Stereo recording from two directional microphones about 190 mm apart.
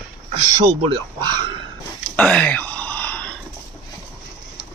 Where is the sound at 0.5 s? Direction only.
25° right (ahead or behind).